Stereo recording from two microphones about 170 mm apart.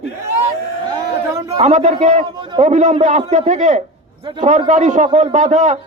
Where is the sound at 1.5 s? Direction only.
45° right (ahead or behind).